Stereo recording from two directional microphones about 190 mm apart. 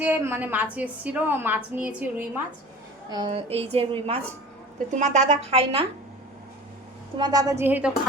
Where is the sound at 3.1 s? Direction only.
25° right (ahead or behind).